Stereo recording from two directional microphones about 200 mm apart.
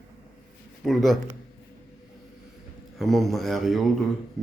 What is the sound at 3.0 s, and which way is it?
Speech, centre (ahead or behind).